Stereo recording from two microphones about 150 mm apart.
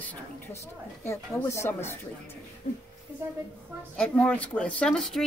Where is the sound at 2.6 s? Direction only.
55° left (ahead or behind).